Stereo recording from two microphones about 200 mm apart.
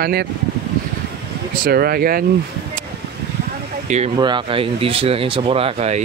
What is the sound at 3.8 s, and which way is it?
Speech, 35° right (ahead or behind).